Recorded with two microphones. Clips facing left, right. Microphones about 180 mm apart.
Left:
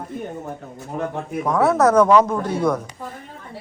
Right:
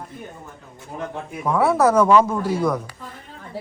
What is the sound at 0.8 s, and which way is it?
Speech, 50° left (ahead or behind).